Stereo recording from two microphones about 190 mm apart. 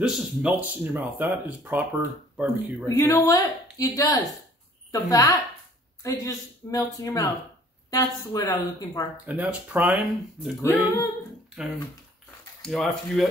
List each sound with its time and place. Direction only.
0.0 s speech: 5° right (ahead or behind)
3.0 s a woman's voice: 15° left (ahead or behind)
9.1 s speech: 10° right (ahead or behind)
10.6 s a woman's voice: 15° left (ahead or behind)
11.6 s speech: 5° right (ahead or behind)